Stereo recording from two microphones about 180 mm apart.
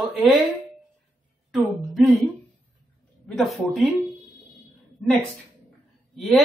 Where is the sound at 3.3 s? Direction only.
Centre (ahead or behind).